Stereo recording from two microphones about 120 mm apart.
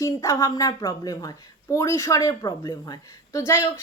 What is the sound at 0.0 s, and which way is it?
A woman's voice, 25° left (ahead or behind).